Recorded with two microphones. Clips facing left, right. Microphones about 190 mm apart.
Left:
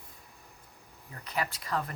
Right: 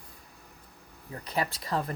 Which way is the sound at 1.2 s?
30° right (ahead or behind).